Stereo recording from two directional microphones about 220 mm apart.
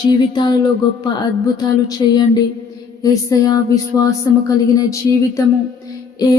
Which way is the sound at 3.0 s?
15° left (ahead or behind).